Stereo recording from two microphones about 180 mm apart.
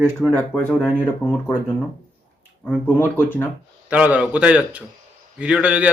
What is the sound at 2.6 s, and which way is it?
Speech, 10° left (ahead or behind).